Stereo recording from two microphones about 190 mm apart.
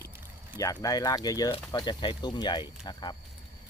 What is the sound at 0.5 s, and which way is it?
Speech, 20° left (ahead or behind).